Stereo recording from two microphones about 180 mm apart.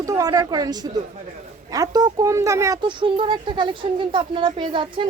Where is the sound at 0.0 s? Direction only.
20° right (ahead or behind).